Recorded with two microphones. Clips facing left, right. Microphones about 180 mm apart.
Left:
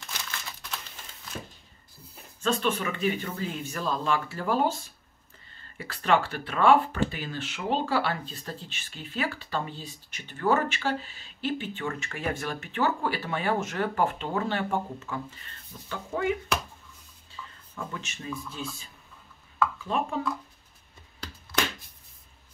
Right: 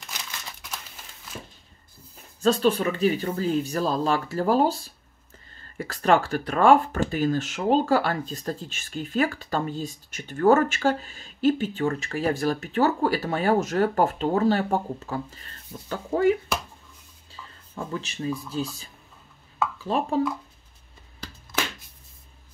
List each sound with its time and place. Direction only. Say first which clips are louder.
0.2 s crumpling: even; 15° right (ahead or behind)
2.4 s speech: right 6 dB; 35° right (ahead or behind)
17.4 s a sound: left 1 dB; 15° right (ahead or behind)
17.7 s speech: right 6 dB; 35° right (ahead or behind)